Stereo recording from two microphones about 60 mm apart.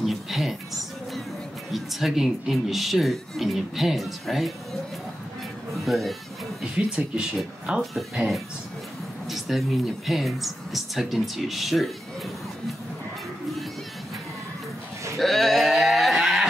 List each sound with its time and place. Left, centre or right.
0.0 s music: centre
1.7 s speech: centre
5.9 s speech: centre
6.6 s speech: centre
9.3 s speech: centre
15.1 s a sound: centre